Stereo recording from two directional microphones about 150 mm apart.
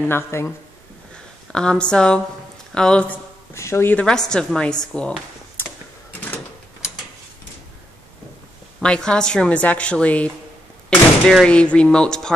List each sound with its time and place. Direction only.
0.1 s speech: 15° left (ahead or behind)
1.1 s speech: 5° left (ahead or behind)
3.5 s speech: 20° left (ahead or behind)
8.8 s speech: 5° left (ahead or behind)